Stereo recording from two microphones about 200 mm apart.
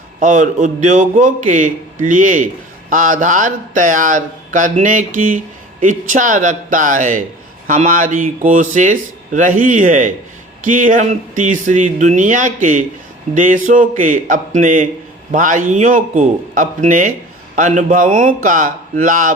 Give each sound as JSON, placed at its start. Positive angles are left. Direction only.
{"t": 0.2, "sound": "speech", "side_deg": -40}